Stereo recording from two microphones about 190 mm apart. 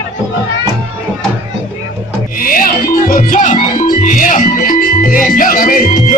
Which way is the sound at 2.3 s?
50° left (ahead or behind).